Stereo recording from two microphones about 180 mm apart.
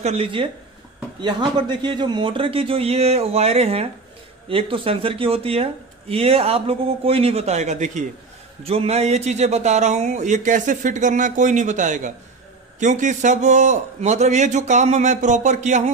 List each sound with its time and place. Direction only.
0.0 s speech: 35° right (ahead or behind)